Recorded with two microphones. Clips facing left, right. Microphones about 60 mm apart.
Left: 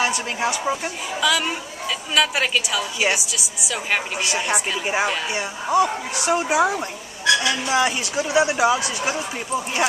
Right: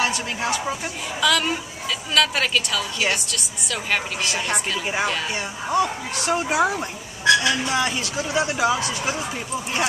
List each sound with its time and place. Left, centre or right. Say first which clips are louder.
0.0 s a woman's voice: left 2 dB; centre
1.2 s a woman's voice: right 1 dB; centre
7.4 s a woman's voice: left 2 dB; centre